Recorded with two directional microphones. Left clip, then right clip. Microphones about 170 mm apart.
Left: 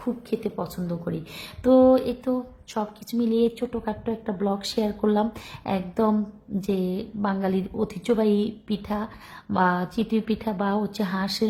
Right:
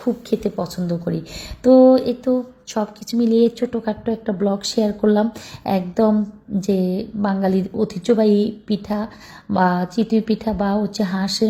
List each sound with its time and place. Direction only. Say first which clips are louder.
0.0 s a woman's voice: right 7 dB; 20° right (ahead or behind)